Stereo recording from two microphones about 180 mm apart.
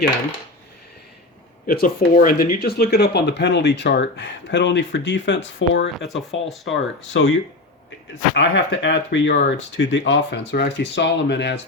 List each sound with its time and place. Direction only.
1.6 s speech: 55° left (ahead or behind); by 7.3 s 90° left
8.4 s speech: 85° left